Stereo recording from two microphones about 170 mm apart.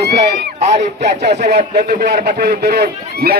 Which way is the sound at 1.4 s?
65° right (ahead or behind).